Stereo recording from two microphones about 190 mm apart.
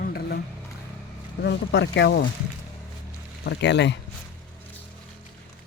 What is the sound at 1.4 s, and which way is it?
Speech, 65° left (ahead or behind).